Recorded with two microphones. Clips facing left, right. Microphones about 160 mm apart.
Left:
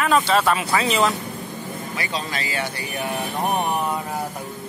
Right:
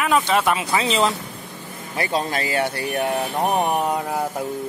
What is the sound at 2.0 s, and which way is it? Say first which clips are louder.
Speech: right 7 dB; 50° right (ahead or behind).